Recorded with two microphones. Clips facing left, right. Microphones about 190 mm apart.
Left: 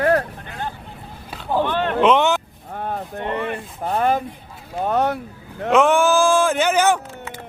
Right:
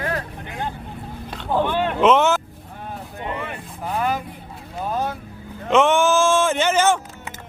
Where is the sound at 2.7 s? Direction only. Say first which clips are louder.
Left 7 dB; 55° left (ahead or behind).